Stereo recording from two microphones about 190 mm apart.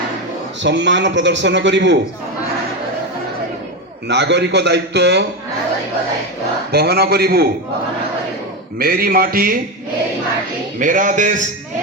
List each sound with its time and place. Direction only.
0.6 s a man's voice: 70° right (ahead or behind)
4.1 s a man's voice: 65° right (ahead or behind)
6.7 s a man's voice: 55° right (ahead or behind)
8.8 s speech: 50° right (ahead or behind)
10.8 s speech: 45° right (ahead or behind)